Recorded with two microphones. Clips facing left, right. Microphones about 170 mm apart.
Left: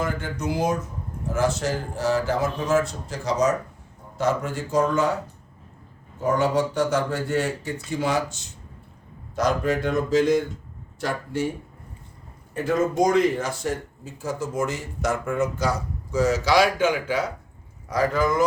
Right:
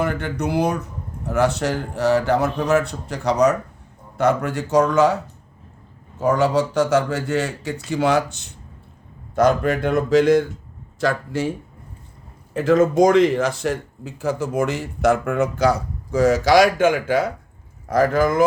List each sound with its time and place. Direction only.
0.0 s speech: 65° right (ahead or behind); by 5.1 s 85° right
6.1 s speech: 90° right; by 10.4 s 75° right (ahead or behind)
11.0 s speech: 90° right
12.5 s speech: 90° right; by 18.4 s 50° right (ahead or behind)